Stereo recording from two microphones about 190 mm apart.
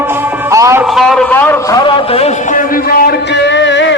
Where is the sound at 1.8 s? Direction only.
30° left (ahead or behind).